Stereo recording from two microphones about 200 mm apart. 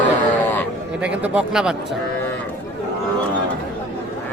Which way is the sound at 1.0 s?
5° right (ahead or behind).